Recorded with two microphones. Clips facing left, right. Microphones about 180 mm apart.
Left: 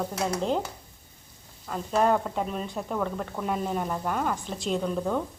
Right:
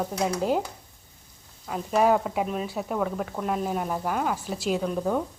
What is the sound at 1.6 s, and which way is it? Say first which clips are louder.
Speech: right 2 dB; 5° right (ahead or behind).